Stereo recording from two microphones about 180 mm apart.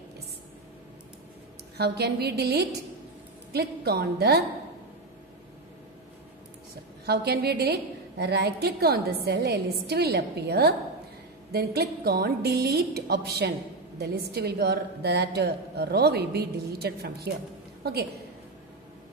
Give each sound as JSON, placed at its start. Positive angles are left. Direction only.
{"t": 1.8, "sound": "a woman's voice", "side_deg": -65}
{"t": 7.1, "sound": "a woman's voice", "side_deg": -60}